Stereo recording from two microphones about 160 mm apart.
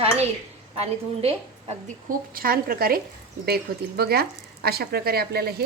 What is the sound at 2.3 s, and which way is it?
Speech, 65° right (ahead or behind).